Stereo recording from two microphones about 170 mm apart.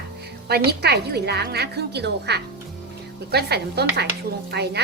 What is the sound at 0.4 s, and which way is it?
A woman's voice, 70° right (ahead or behind).